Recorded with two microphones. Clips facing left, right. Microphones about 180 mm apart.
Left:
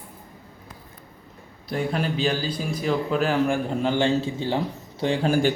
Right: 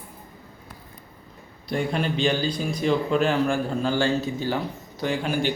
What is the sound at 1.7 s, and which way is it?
Speech, 5° left (ahead or behind).